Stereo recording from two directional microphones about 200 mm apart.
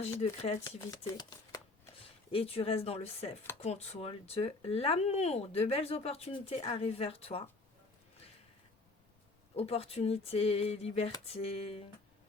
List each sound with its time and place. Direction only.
0.4 s speech: 30° left (ahead or behind)
9.6 s speech: 30° left (ahead or behind)